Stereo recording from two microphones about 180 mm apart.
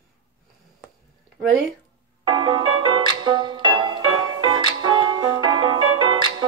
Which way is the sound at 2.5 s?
25° right (ahead or behind).